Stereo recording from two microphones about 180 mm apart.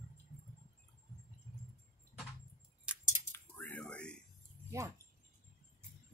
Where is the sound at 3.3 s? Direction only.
10° left (ahead or behind).